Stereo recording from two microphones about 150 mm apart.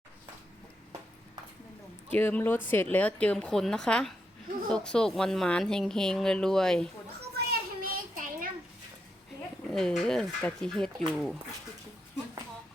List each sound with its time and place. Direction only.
2.1 s a woman's voice: 10° left (ahead or behind)
7.3 s a sound: 70° right (ahead or behind)
9.6 s speech: 5° left (ahead or behind)